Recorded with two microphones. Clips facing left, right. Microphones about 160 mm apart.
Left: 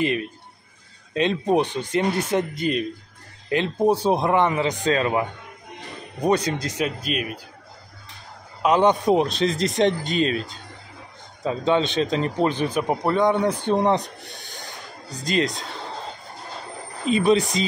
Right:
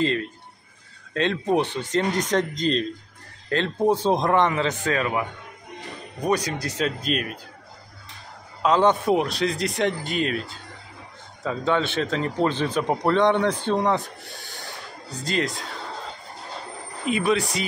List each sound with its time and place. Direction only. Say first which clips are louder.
0.0 s a man's voice: even; 15° left (ahead or behind)
4.9 s a man's voice: left 3 dB; 25° left (ahead or behind)
6.2 s a man's voice: left 3 dB; 25° left (ahead or behind)
6.8 s a man's voice: right 3 dB; 5° left (ahead or behind)
8.6 s a man's voice: left 1 dB; 15° left (ahead or behind)
17.0 s a man's voice: left 4 dB; 25° left (ahead or behind)